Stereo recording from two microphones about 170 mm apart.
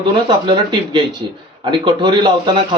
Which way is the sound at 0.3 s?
25° right (ahead or behind).